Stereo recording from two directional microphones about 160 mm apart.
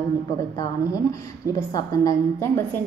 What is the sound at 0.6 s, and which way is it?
A woman's voice, 20° left (ahead or behind).